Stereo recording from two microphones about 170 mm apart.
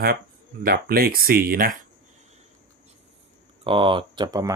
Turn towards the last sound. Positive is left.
turn(degrees=-20)  # may be behind; listen again after turning